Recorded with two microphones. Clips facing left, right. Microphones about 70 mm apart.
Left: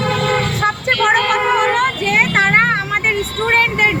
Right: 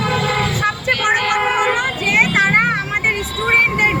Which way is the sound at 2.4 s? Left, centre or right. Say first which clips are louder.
Left 2 dB; left.